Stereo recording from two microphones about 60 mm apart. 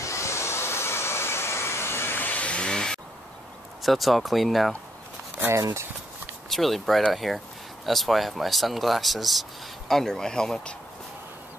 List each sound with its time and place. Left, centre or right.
0.0 s hair dryer: left; by 3.0 s centre
3.8 s speech: centre
6.5 s speech: centre